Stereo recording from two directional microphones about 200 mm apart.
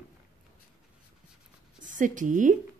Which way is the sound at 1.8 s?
40° right (ahead or behind).